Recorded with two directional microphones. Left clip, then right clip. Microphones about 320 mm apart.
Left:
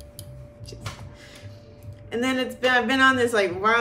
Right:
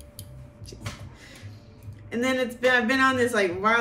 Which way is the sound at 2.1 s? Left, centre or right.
Centre.